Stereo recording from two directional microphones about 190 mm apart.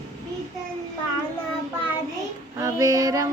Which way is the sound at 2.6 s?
15° right (ahead or behind).